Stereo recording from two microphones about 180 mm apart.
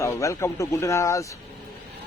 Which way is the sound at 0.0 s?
15° left (ahead or behind).